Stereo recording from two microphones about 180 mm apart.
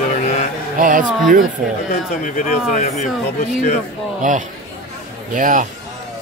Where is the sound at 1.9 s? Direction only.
45° left (ahead or behind).